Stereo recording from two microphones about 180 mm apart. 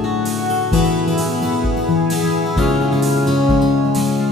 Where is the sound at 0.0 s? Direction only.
Centre (ahead or behind).